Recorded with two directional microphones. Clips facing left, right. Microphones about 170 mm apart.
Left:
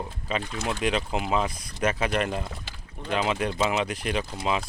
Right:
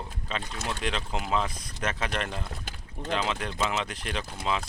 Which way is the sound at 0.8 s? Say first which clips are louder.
Left 7 dB; 10° left (ahead or behind).